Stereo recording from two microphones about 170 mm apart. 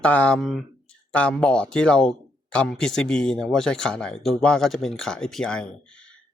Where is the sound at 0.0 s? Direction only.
5° left (ahead or behind).